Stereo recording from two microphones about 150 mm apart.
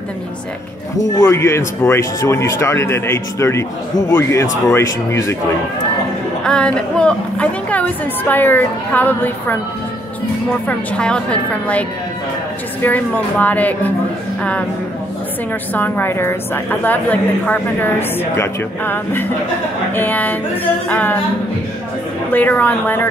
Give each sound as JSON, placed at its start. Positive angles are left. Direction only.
{"t": 1.1, "sound": "a woman's voice", "side_deg": 20}
{"t": 6.4, "sound": "a woman's voice", "side_deg": 5}
{"t": 10.7, "sound": "a woman's voice", "side_deg": 5}
{"t": 12.8, "sound": "a woman's voice", "side_deg": 10}
{"t": 15.7, "sound": "a woman's voice", "side_deg": 15}
{"t": 22.3, "sound": "a woman's voice", "side_deg": 10}